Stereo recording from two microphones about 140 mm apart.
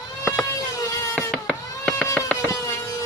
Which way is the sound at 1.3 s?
5° left (ahead or behind).